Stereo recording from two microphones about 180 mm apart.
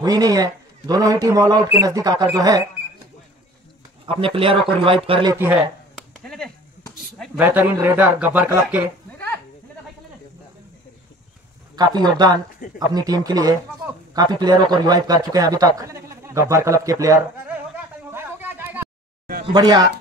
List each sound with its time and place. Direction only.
0.0 s a man's voice: 20° right (ahead or behind)
4.0 s speech: 30° right (ahead or behind)
5.3 s speech: 10° right (ahead or behind)
7.3 s speech: 10° right (ahead or behind)
11.7 s a man's voice: 25° right (ahead or behind)
18.1 s a sound: 10° right (ahead or behind)
19.5 s a man's voice: 20° right (ahead or behind)